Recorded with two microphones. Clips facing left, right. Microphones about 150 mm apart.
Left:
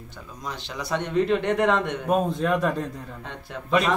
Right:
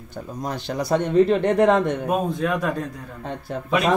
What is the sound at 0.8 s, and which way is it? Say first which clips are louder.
A man's voice: right 6 dB; 40° right (ahead or behind).